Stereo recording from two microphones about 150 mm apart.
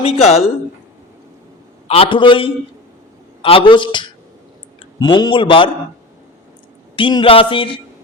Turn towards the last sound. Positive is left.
turn(degrees=35)  # may be behind; listen again after turning